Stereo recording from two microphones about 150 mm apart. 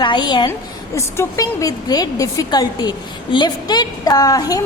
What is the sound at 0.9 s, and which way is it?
A woman's voice, 20° left (ahead or behind).